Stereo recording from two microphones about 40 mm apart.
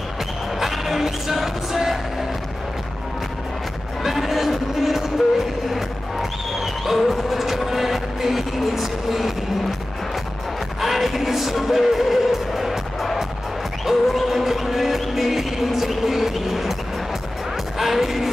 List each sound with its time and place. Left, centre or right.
0.6 s music: centre
4.0 s music: centre
10.8 s music: centre
17.7 s music: centre